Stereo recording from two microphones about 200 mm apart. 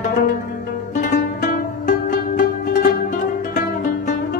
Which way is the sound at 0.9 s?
40° left (ahead or behind).